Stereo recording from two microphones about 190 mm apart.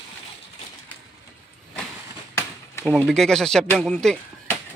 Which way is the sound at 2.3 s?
15° left (ahead or behind).